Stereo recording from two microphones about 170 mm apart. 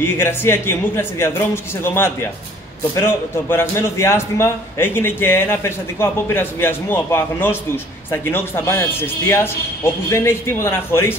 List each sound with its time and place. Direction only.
0.0 s a man's voice: 15° left (ahead or behind)